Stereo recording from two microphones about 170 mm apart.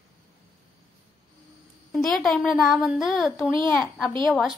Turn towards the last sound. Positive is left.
turn(degrees=0)  # may be behind; listen again after turning